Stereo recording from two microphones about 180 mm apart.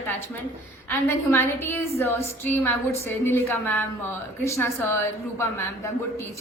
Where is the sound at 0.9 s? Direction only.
10° left (ahead or behind).